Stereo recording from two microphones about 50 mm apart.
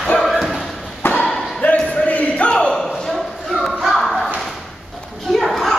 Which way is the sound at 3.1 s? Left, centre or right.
Centre.